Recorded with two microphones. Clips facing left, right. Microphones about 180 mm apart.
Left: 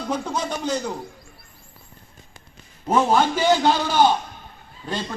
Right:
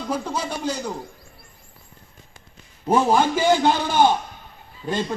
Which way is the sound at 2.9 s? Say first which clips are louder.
Right 1 dB; 10° right (ahead or behind).